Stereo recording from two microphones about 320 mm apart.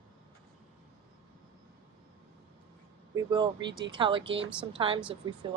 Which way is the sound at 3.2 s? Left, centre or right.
Centre.